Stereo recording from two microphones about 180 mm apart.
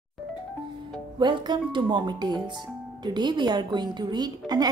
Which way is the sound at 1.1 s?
25° right (ahead or behind).